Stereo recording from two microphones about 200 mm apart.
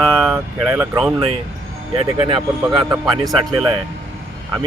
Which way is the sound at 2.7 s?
20° right (ahead or behind).